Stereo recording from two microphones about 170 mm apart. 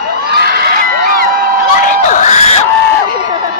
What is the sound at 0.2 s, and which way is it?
Crowd, 70° right (ahead or behind).